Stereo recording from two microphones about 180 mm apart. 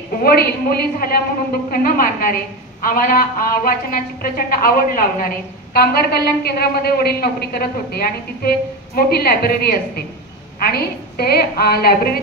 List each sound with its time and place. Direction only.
0.2 s a woman's voice: 55° left (ahead or behind)